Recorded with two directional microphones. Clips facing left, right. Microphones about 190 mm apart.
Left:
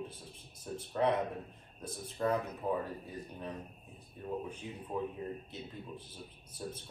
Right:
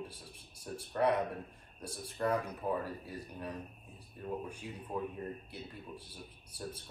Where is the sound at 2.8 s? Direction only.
10° right (ahead or behind).